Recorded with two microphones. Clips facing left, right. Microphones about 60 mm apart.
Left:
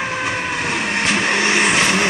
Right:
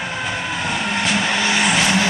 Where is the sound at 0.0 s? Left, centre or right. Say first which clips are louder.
Left 3 dB; left.